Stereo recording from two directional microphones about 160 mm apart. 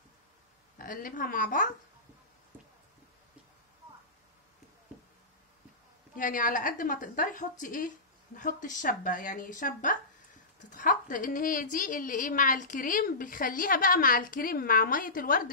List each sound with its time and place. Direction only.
0.7 s a woman's voice: 60° left (ahead or behind)
6.1 s a woman's voice: 55° left (ahead or behind)